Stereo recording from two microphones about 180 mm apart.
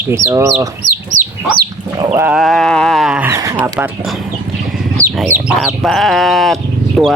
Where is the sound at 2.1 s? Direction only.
10° right (ahead or behind).